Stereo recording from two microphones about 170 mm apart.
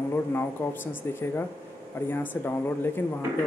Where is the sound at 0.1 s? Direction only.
10° left (ahead or behind).